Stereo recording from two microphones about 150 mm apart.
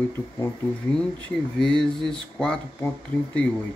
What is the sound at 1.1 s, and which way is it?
Speech, 5° left (ahead or behind).